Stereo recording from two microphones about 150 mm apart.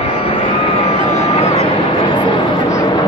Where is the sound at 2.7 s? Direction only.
20° left (ahead or behind).